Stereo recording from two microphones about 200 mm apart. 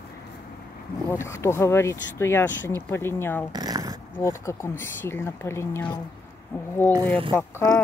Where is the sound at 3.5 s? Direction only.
20° right (ahead or behind).